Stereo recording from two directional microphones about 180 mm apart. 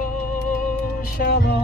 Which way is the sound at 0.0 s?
50° left (ahead or behind).